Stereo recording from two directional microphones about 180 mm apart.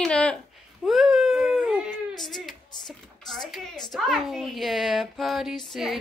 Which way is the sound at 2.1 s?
25° left (ahead or behind).